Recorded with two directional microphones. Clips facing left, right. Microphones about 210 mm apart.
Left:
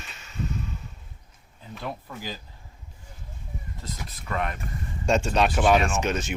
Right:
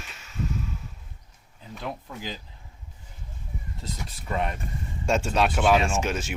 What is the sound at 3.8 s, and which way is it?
Speech, 30° right (ahead or behind).